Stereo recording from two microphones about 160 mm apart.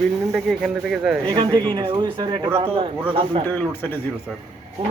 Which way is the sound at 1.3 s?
30° right (ahead or behind).